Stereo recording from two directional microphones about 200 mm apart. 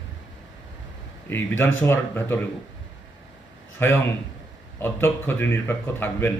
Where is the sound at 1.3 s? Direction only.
10° left (ahead or behind).